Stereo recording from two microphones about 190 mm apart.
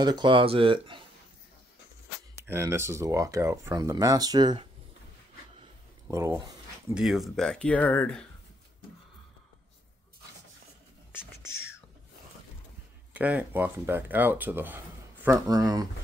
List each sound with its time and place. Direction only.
0.0 s speech: 25° right (ahead or behind)
2.4 s speech: 15° right (ahead or behind)
6.0 s speech: 15° right (ahead or behind)
6.9 s speech: centre (ahead or behind)
13.1 s speech: 10° right (ahead or behind)